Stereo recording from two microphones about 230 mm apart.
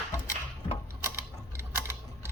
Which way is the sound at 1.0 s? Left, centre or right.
Centre.